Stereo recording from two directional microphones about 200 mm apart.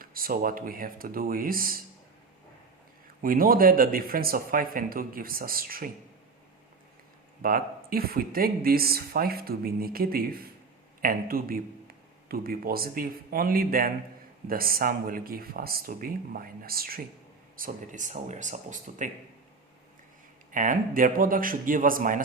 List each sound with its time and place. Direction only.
0.0 s speech: 45° right (ahead or behind)
3.2 s speech: 45° right (ahead or behind)
7.4 s speech: 45° right (ahead or behind)
20.5 s speech: 40° right (ahead or behind)